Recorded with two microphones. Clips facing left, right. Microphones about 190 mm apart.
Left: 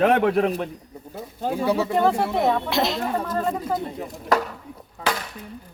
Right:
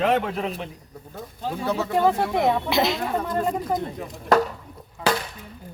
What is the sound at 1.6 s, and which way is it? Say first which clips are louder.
A woman's voice: left 1 dB; 10° left (ahead or behind).